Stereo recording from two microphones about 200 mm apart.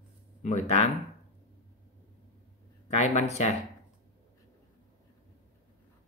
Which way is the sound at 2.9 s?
35° left (ahead or behind).